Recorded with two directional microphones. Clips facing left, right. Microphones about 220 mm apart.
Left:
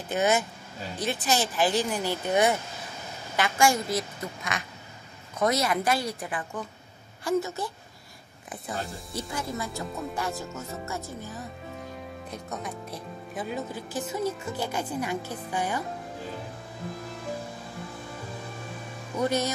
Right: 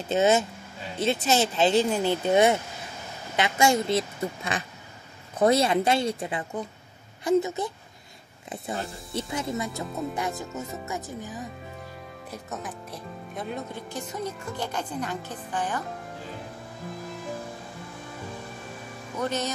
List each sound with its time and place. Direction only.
0.1 s speech: 25° right (ahead or behind)
9.1 s speech: 20° right (ahead or behind)
12.3 s speech: 5° right (ahead or behind)
19.2 s speech: 10° left (ahead or behind)